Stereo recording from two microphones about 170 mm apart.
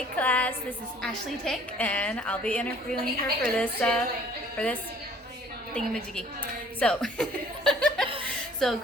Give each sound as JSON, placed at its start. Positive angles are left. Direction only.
{"t": 0.2, "sound": "a woman's voice", "side_deg": 10}